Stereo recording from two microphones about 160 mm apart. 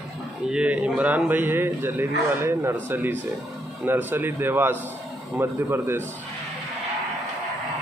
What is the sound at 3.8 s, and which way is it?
A man's voice, 10° right (ahead or behind).